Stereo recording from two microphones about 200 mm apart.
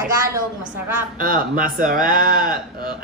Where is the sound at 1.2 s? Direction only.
45° right (ahead or behind).